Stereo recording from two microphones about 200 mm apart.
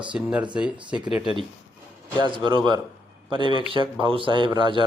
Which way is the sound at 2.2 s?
25° right (ahead or behind).